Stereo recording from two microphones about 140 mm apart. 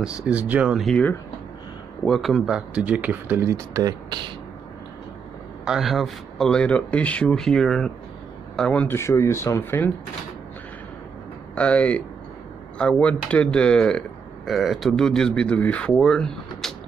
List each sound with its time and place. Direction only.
0.0 s speech: 10° right (ahead or behind)
2.0 s speech: centre (ahead or behind); by 4.2 s 25° right (ahead or behind)
5.7 s speech: centre (ahead or behind); by 9.9 s 15° left (ahead or behind)
11.5 s speech: 10° left (ahead or behind)